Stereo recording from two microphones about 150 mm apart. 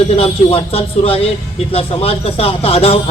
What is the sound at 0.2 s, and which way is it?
A man's voice, 40° left (ahead or behind).